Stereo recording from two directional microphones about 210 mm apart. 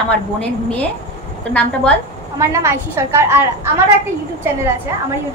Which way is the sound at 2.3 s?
15° right (ahead or behind).